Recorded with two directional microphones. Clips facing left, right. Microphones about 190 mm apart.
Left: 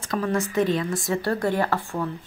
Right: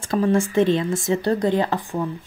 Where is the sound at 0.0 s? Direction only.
30° right (ahead or behind).